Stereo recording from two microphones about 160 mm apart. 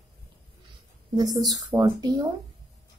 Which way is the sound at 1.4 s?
25° right (ahead or behind).